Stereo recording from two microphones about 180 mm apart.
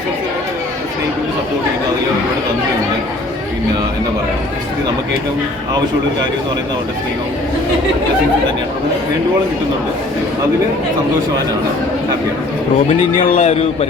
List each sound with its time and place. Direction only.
13.1 s speech: 40° left (ahead or behind)